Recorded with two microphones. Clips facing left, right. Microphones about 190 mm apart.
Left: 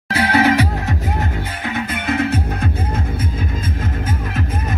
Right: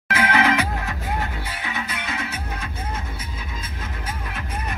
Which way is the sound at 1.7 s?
55° left (ahead or behind).